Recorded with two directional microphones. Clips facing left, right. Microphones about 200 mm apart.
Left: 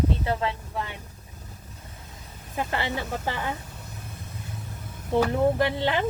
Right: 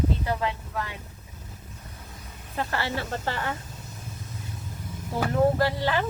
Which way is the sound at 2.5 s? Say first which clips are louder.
Left 1 dB; 15° left (ahead or behind).